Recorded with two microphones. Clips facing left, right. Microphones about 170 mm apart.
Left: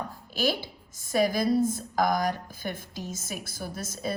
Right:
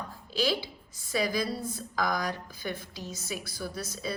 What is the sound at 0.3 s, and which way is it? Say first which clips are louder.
A woman's voice: left 1 dB; 50° left (ahead or behind).